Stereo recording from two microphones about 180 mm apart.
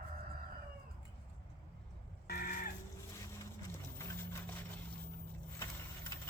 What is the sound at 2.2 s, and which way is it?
Cat, 50° left (ahead or behind).